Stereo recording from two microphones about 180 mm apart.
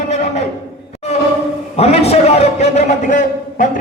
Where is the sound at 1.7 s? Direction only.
35° left (ahead or behind).